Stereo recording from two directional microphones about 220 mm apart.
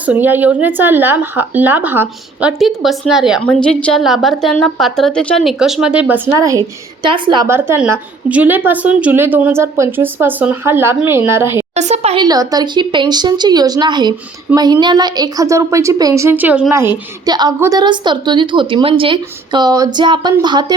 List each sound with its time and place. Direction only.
0.0 s speech: 10° right (ahead or behind)
11.7 s speech: 30° right (ahead or behind); by 16.9 s 10° right (ahead or behind)
17.2 s a woman's voice: 20° right (ahead or behind)